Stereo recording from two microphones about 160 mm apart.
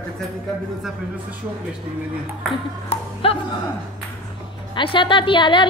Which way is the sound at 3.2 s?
35° left (ahead or behind).